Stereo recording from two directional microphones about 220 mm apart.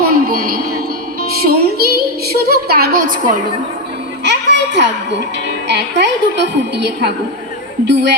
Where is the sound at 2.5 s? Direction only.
45° right (ahead or behind).